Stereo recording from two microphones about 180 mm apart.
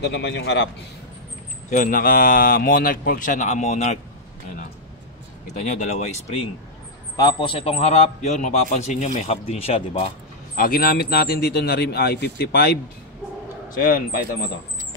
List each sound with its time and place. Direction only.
0.0 s a man's voice: 75° left (ahead or behind)
1.7 s speech: 50° left (ahead or behind)
5.5 s speech: 45° left (ahead or behind)
7.2 s a man's voice: 25° left (ahead or behind)
10.5 s a man's voice: 55° left (ahead or behind)
13.7 s speech: 50° left (ahead or behind)